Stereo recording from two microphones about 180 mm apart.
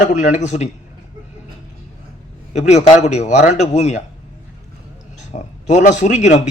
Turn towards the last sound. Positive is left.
turn(degrees=40)  # may be behind; listen again after turning